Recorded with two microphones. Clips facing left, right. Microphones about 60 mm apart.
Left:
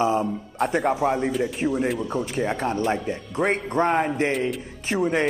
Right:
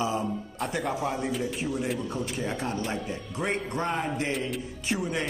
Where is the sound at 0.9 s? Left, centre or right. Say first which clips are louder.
Left 7 dB; left.